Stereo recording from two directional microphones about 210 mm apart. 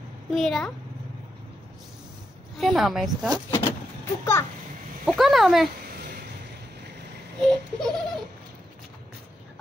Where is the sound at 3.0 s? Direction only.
20° right (ahead or behind).